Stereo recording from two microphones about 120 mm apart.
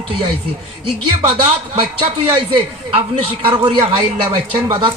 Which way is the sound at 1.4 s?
50° right (ahead or behind).